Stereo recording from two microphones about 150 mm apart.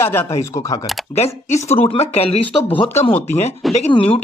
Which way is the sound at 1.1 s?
45° left (ahead or behind).